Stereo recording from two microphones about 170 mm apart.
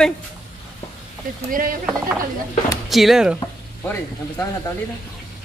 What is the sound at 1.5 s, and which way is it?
Speech, 55° right (ahead or behind).